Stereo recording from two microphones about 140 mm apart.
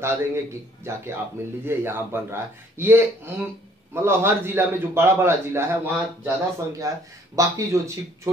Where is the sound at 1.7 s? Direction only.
15° right (ahead or behind).